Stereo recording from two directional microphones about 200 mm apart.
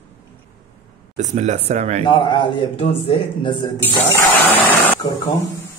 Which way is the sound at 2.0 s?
25° left (ahead or behind).